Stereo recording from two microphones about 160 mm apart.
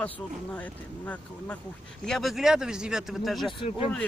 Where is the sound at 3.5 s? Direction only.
35° left (ahead or behind).